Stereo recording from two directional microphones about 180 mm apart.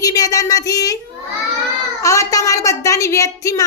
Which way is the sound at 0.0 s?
20° left (ahead or behind).